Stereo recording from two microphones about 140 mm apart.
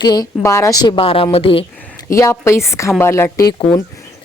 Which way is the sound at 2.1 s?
20° left (ahead or behind).